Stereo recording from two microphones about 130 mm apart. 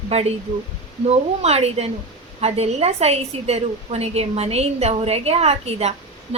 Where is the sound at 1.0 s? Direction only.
55° right (ahead or behind).